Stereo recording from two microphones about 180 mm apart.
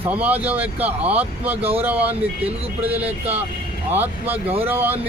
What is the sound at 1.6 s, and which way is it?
Speech, 35° right (ahead or behind).